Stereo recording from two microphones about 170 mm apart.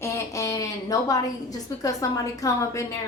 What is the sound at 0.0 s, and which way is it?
A woman's voice, 15° left (ahead or behind).